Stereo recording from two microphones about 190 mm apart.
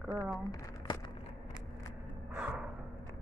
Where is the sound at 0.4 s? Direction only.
20° left (ahead or behind).